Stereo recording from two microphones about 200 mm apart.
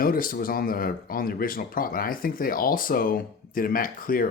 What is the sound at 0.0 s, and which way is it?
Speech, 45° left (ahead or behind).